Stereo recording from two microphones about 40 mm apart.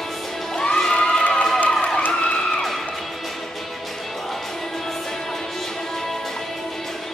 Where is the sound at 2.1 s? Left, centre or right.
Left.